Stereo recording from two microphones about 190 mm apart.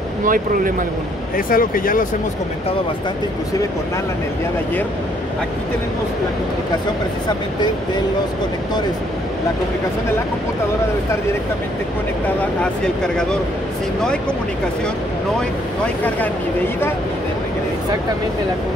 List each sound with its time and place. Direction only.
0.2 s speech: 45° right (ahead or behind)
1.3 s speech: 50° left (ahead or behind)
12.8 s speech: 5° left (ahead or behind)